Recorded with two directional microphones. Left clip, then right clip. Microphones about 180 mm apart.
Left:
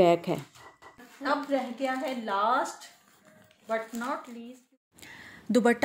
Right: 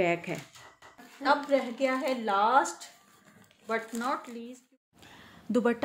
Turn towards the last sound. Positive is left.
turn(degrees=10)  # may be behind; listen again after turning